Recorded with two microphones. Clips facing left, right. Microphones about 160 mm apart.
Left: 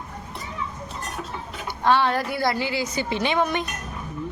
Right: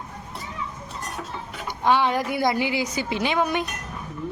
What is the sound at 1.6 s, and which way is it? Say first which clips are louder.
A woman's voice: even; 15° right (ahead or behind).